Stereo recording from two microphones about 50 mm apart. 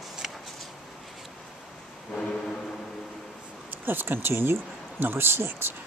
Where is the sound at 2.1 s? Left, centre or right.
Centre.